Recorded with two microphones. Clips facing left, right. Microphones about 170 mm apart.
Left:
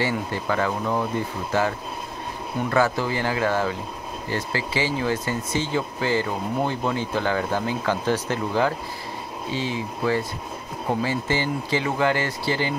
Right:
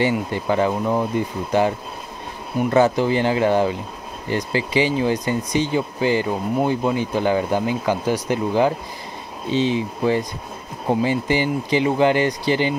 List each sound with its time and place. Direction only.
0.0 s speech: 20° right (ahead or behind)
2.7 s speech: 20° right (ahead or behind)